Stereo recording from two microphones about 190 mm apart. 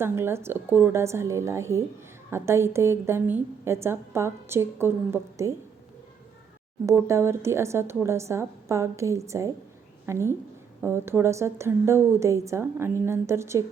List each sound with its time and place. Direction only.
0.0 s a woman's voice: 10° right (ahead or behind)
6.8 s a woman's voice: 15° right (ahead or behind)